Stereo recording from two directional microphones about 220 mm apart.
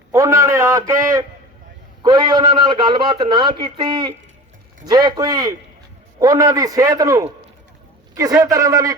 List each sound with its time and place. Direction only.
0.1 s a man's voice: 15° right (ahead or behind)
2.0 s a man's voice: 20° right (ahead or behind)